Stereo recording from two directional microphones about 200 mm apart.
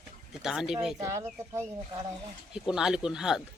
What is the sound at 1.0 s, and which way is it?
Speech, 15° right (ahead or behind).